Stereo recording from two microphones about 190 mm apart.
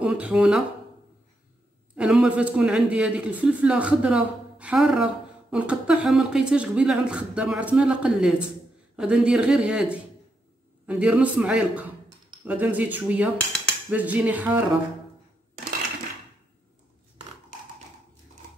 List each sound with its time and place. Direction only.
0.0 s speech: 5° right (ahead or behind)
2.0 s a man's voice: 5° right (ahead or behind)